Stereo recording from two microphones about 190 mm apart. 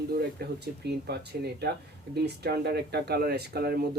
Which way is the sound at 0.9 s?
60° right (ahead or behind).